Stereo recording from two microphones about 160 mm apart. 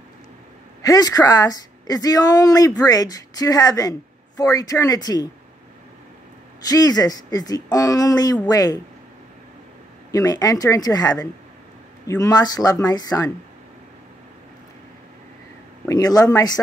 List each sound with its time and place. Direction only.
0.8 s a woman's voice: 25° left (ahead or behind)
6.7 s a woman's voice: 25° left (ahead or behind)
10.1 s a woman's voice: 20° left (ahead or behind)
15.9 s a woman's voice: 25° left (ahead or behind)